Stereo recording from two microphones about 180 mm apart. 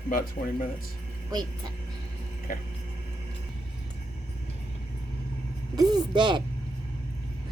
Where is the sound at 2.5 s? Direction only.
50° left (ahead or behind).